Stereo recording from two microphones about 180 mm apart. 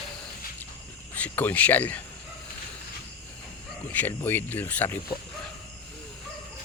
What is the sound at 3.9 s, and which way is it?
Speech, 10° left (ahead or behind).